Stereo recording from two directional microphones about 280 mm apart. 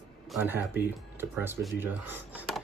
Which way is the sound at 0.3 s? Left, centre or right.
Centre.